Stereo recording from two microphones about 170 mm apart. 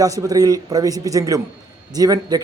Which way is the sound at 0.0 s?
20° right (ahead or behind).